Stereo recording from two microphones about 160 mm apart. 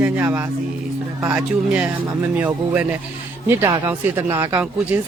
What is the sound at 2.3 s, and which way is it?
Speech, 10° right (ahead or behind).